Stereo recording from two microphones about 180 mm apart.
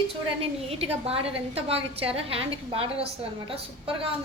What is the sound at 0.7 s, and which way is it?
A woman's voice, 35° right (ahead or behind).